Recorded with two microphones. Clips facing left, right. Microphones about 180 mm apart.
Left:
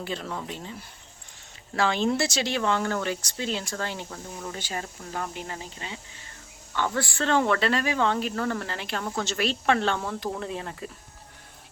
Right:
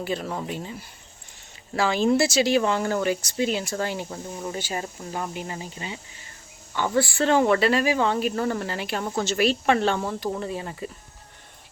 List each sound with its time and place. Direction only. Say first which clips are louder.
0.0 s speech: right 4 dB; 10° right (ahead or behind)